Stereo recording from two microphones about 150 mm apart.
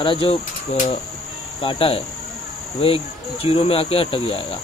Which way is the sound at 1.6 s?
40° left (ahead or behind).